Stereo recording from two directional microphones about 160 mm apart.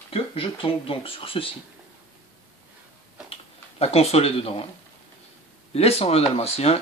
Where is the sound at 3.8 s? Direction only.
40° left (ahead or behind).